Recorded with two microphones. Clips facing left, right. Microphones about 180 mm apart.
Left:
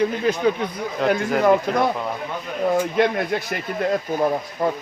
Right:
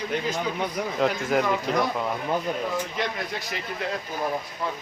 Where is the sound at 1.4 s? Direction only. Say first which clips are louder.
Left 7 dB; 55° left (ahead or behind).